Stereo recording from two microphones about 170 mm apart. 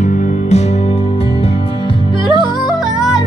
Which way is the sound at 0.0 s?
40° left (ahead or behind).